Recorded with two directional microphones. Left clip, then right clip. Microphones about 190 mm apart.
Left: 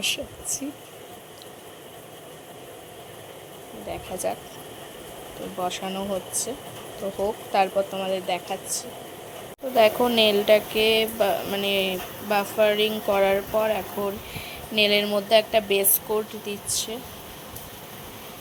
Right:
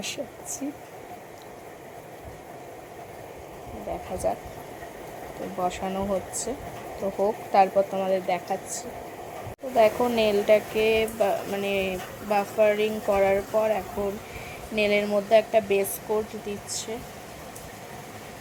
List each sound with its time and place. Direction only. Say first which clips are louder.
0.0 s speech: left 6 dB; 10° right (ahead or behind)
4.2 s speech: right 1 dB; 10° right (ahead or behind)
5.5 s speech: right 1 dB; 15° right (ahead or behind)
9.7 s speech: left 2 dB; centre (ahead or behind)